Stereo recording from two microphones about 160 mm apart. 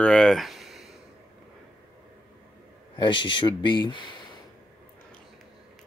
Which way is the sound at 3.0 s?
30° left (ahead or behind).